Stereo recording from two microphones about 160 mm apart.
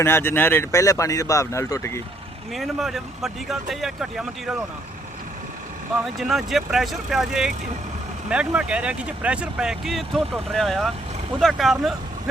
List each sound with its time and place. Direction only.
0.0 s speech: 15° left (ahead or behind)
2.5 s speech: centre (ahead or behind)
6.1 s speech: centre (ahead or behind)